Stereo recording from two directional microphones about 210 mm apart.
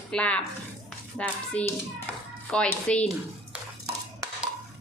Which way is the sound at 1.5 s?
5° left (ahead or behind).